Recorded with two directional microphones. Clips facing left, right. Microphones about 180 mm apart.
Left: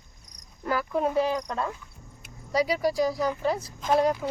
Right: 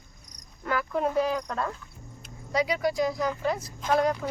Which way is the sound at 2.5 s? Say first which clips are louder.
Left 1 dB; 35° left (ahead or behind).